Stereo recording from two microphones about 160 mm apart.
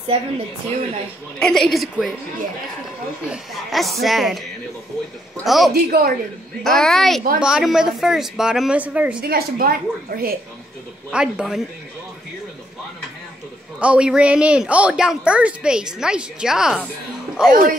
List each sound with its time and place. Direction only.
1.4 s a woman's voice: centre (ahead or behind)
3.3 s a woman's voice: centre (ahead or behind)
5.4 s a woman's voice: centre (ahead or behind)
5.7 s a woman's voice: 70° right (ahead or behind)
6.6 s a woman's voice: centre (ahead or behind)
9.2 s a woman's voice: 70° right (ahead or behind)
11.1 s a woman's voice: 5° right (ahead or behind)
13.7 s a woman's voice: 5° right (ahead or behind)
17.5 s speech: 60° right (ahead or behind)